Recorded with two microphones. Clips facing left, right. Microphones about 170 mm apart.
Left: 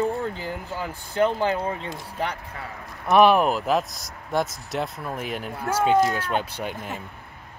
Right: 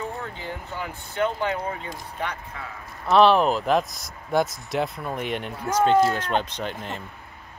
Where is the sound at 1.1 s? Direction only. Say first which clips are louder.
Left 3 dB; 35° left (ahead or behind).